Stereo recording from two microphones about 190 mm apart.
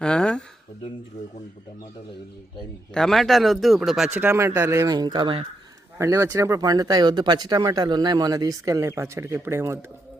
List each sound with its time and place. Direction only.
0.0 s a sound: 5° left (ahead or behind)
2.9 s speech: 5° left (ahead or behind); by 5.5 s 25° right (ahead or behind)
6.0 s speech: 15° right (ahead or behind)